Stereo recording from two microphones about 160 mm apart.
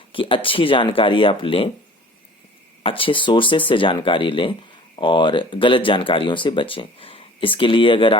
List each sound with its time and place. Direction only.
0.1 s speech: 35° left (ahead or behind)
2.8 s speech: 35° left (ahead or behind)